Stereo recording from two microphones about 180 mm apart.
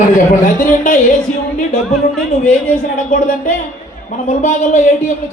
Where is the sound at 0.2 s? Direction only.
45° left (ahead or behind).